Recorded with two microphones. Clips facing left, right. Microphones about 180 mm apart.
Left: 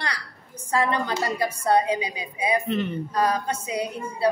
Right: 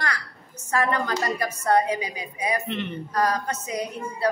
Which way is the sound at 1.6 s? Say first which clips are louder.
Even; 10° left (ahead or behind).